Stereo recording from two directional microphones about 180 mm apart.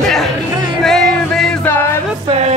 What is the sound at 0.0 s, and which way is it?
Chatter, centre (ahead or behind).